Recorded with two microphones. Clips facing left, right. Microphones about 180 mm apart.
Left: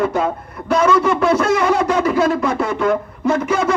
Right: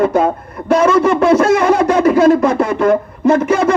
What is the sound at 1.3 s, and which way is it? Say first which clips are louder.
A man's voice: right 5 dB; 50° right (ahead or behind).